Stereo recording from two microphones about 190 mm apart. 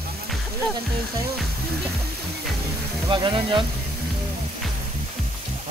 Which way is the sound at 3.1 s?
25° right (ahead or behind).